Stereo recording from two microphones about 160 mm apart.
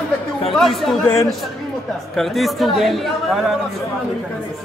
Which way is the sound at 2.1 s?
Centre (ahead or behind).